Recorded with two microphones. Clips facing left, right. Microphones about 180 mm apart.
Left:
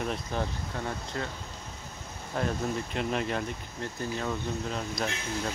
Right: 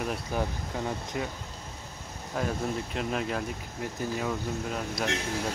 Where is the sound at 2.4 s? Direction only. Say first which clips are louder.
Even; centre (ahead or behind).